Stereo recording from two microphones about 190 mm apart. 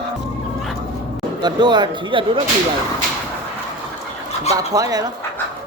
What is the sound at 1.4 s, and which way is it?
Speech, 25° right (ahead or behind).